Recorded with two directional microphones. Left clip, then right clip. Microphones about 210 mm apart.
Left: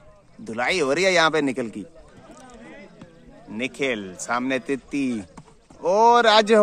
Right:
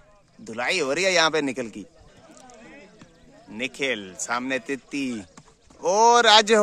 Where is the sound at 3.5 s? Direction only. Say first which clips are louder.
Left 1 dB; 5° right (ahead or behind).